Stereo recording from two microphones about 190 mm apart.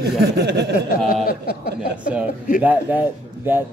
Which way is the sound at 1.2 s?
55° left (ahead or behind).